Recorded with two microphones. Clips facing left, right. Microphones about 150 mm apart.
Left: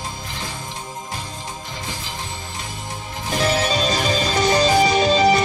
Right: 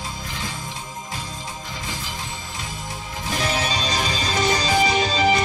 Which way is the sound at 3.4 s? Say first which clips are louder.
Left 6 dB; 45° left (ahead or behind).